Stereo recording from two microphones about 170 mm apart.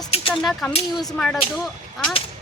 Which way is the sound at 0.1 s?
35° left (ahead or behind).